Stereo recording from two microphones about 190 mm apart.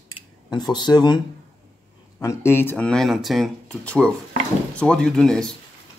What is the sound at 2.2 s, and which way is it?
Speech, 10° left (ahead or behind).